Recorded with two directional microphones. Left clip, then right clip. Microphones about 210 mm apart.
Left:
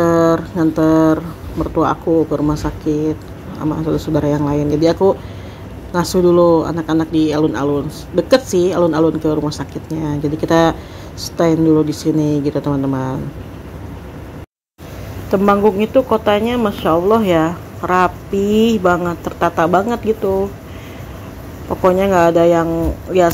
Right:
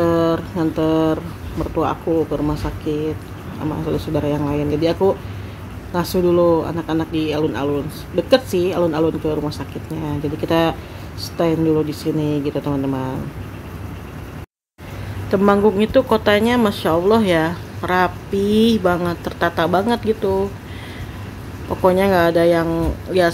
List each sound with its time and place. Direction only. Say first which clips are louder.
0.0 s speech: left 4 dB; 10° left (ahead or behind)
3.7 s speech: left 4 dB; 10° left (ahead or behind)
7.1 s speech: left 6 dB; 10° right (ahead or behind)
7.3 s speech: left 4 dB; 10° left (ahead or behind)
8.3 s speech: left 3 dB; 10° right (ahead or behind)
8.7 s speech: left 4 dB; 5° left (ahead or behind)
15.2 s speech: left 2 dB; 5° right (ahead or behind)
18.5 s speech: left 2 dB; 45° right (ahead or behind)
18.8 s speech: left 4 dB; 10° right (ahead or behind)
21.6 s speech: left 2 dB; 5° right (ahead or behind)
22.5 s speech: left 3 dB; 10° right (ahead or behind)